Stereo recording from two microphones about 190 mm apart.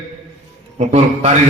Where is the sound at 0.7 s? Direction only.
35° right (ahead or behind).